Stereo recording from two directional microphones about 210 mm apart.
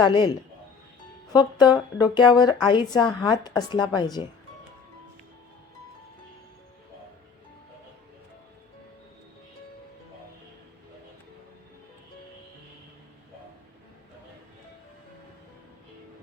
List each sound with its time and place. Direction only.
0.0 s speech: 20° left (ahead or behind)